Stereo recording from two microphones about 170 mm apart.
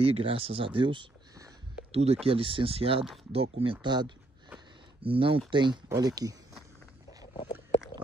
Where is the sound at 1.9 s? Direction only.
35° right (ahead or behind).